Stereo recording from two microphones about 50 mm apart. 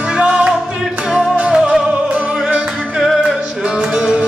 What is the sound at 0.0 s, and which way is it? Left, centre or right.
Music, centre.